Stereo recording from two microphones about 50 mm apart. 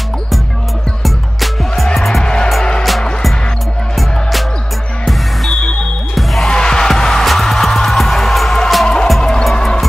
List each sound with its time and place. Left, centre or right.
1.0 s music: centre
2.2 s music: centre
3.9 s music: centre
5.5 s music: centre
6.1 s music: centre
6.5 s music: centre
8.8 s music: centre